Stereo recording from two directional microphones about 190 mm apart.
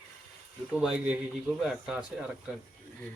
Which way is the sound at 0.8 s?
5° right (ahead or behind).